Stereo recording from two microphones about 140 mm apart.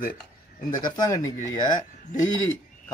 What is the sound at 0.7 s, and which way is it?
Speech, 30° left (ahead or behind).